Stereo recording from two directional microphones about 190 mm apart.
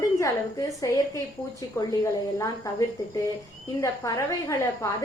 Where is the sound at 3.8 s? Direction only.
15° left (ahead or behind).